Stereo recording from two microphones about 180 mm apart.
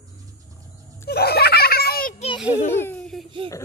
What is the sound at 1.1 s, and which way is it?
Children playing, 60° left (ahead or behind).